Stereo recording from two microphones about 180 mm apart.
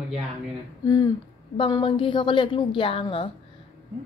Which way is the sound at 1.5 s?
25° left (ahead or behind).